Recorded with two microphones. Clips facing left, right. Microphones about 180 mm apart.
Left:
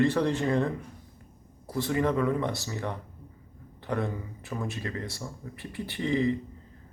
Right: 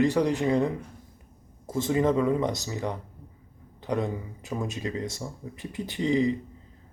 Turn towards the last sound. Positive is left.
turn(degrees=-20)  # may be behind; listen again after turning